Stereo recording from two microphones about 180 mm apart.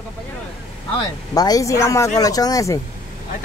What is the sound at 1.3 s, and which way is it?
A woman's voice, 20° left (ahead or behind).